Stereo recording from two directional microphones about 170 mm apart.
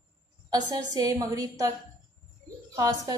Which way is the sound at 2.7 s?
20° right (ahead or behind).